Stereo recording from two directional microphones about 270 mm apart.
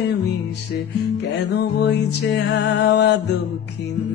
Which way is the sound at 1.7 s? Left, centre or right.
Left.